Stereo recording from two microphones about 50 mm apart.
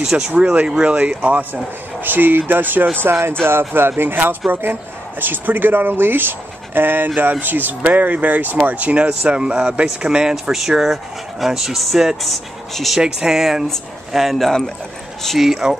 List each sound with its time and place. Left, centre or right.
0.1 s speech: right
2.0 s speech: right
3.0 s speech: right; by 10.3 s centre
10.3 s speech: centre
13.0 s speech: centre